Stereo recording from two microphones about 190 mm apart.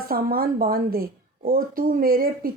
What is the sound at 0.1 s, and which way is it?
Speech, 50° right (ahead or behind).